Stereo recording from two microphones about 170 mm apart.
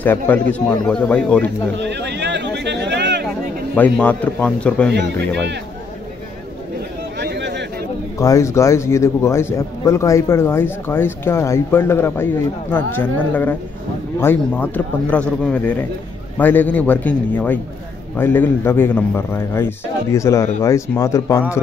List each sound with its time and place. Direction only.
0.0 s a man's voice: 10° left (ahead or behind)
1.8 s speech: 90° right
3.7 s a man's voice: 10° left (ahead or behind)
7.2 s a sound: 90° right
8.2 s a man's voice: 20° left (ahead or behind)